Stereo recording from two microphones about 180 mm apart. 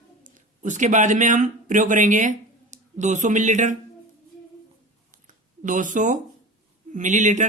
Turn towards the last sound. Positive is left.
turn(degrees=-45)  # may be behind; listen again after turning